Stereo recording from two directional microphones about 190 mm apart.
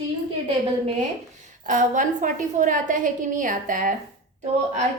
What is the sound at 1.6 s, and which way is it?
A woman's voice, 40° right (ahead or behind).